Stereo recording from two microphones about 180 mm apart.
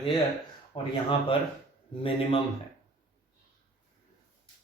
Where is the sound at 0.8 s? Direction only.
30° left (ahead or behind).